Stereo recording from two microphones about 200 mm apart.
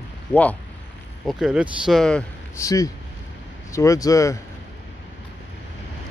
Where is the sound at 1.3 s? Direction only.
5° right (ahead or behind).